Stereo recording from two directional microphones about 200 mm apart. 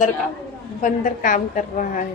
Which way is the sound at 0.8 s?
40° left (ahead or behind).